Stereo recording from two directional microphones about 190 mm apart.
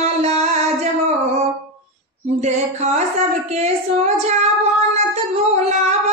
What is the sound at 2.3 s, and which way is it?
Child singing, 35° right (ahead or behind).